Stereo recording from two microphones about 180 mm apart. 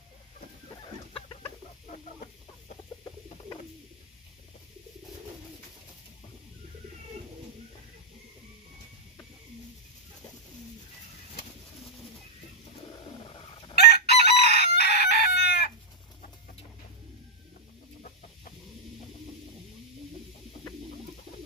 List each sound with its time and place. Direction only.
13.0 s bird: 30° left (ahead or behind)
13.7 s chicken: 65° left (ahead or behind)